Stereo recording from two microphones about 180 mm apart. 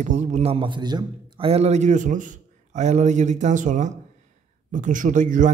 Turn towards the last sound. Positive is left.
turn(degrees=-45)  # may be behind; listen again after turning